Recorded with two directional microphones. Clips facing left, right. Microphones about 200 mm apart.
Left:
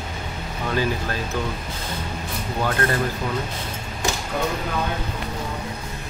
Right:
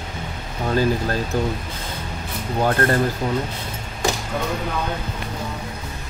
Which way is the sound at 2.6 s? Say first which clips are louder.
Right 4 dB; 40° right (ahead or behind).